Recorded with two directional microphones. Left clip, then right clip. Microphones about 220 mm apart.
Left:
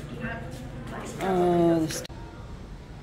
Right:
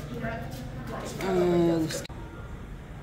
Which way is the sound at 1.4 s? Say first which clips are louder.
Left 2 dB; 20° left (ahead or behind).